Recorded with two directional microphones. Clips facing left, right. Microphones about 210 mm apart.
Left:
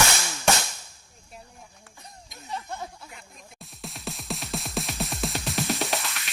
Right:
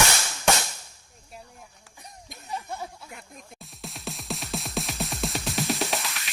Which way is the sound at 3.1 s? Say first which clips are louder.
Right 3 dB; 50° right (ahead or behind).